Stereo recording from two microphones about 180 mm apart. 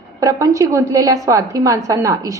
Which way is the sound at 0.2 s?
20° right (ahead or behind).